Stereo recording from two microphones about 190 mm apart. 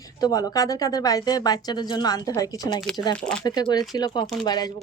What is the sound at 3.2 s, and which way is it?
Speech, 5° left (ahead or behind).